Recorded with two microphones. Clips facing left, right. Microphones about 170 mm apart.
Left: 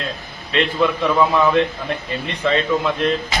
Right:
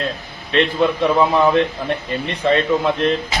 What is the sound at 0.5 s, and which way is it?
Speech, 35° right (ahead or behind).